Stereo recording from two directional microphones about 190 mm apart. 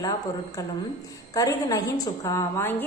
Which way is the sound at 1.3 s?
20° left (ahead or behind).